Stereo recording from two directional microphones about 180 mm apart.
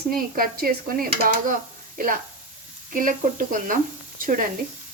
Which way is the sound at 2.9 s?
45° right (ahead or behind).